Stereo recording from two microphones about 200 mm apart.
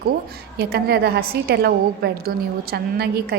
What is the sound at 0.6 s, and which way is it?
A woman's voice, 50° right (ahead or behind).